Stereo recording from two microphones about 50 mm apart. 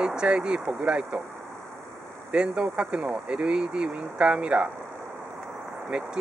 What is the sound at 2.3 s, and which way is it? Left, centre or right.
Speech, centre.